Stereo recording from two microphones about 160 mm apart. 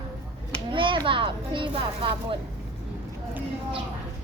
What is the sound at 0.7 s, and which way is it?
Speech, 30° right (ahead or behind).